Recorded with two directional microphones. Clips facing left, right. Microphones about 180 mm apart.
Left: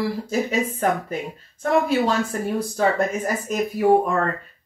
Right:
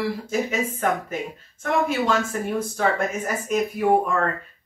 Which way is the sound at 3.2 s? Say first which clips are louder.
Left 2 dB; 35° left (ahead or behind).